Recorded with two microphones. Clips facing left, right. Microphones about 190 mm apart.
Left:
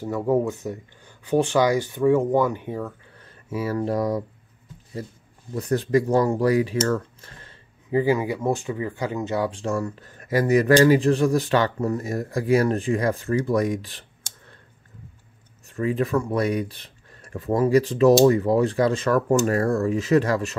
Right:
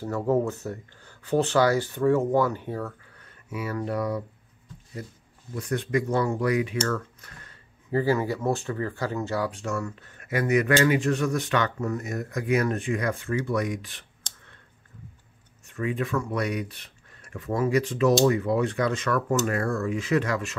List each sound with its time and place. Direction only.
0.0 s speech: 10° left (ahead or behind)
3.2 s speech: 30° left (ahead or behind)
5.5 s speech: 35° left (ahead or behind)
7.9 s speech: 15° left (ahead or behind); by 14.0 s 35° left (ahead or behind)
15.6 s speech: 35° left (ahead or behind)